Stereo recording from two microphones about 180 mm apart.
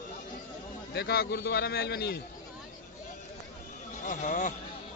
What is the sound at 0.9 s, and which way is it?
A man's voice, 60° left (ahead or behind).